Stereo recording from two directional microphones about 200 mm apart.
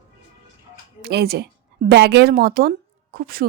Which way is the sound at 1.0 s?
50° right (ahead or behind).